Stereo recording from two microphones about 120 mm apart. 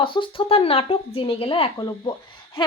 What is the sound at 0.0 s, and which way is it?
A woman's voice, 45° left (ahead or behind).